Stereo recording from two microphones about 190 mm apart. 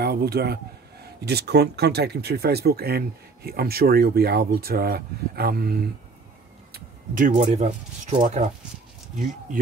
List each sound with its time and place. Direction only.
0.0 s speech: 55° right (ahead or behind)
6.7 s speech: 45° right (ahead or behind)